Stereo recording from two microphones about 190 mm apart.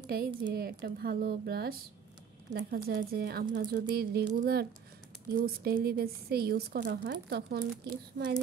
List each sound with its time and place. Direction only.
0.0 s a woman's voice: 55° right (ahead or behind)
5.4 s speech: 55° right (ahead or behind)